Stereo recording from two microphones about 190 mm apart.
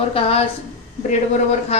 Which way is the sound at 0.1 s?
30° left (ahead or behind).